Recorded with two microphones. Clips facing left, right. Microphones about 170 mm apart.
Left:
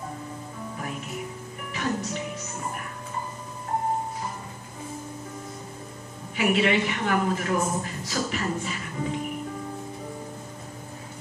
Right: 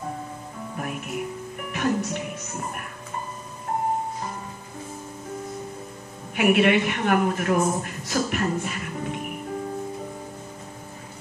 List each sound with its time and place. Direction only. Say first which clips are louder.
1.7 s music: right 4 dB; 55° right (ahead or behind)
6.3 s a woman's voice: right 4 dB; 55° right (ahead or behind)